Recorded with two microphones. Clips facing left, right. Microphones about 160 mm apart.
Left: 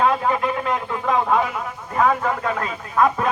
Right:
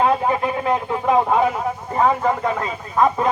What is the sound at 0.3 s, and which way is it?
Speech, 30° right (ahead or behind).